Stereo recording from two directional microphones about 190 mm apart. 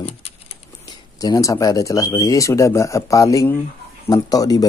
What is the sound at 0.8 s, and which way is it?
Speech, 20° left (ahead or behind).